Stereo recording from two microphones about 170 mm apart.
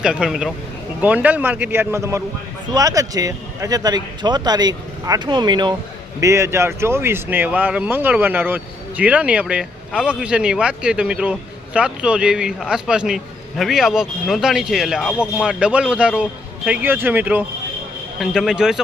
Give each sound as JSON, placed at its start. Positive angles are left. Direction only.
{"t": 0.0, "sound": "a man's voice", "side_deg": -5}